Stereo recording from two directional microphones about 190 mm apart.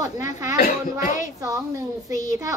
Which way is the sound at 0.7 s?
45° left (ahead or behind).